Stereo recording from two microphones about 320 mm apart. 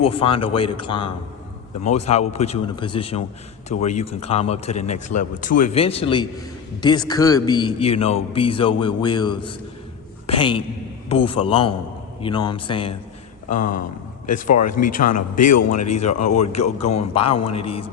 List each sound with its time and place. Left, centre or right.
0.0 s a man's voice: centre